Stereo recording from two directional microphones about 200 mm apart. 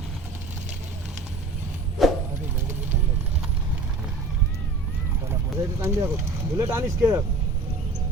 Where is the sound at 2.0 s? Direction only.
Centre (ahead or behind).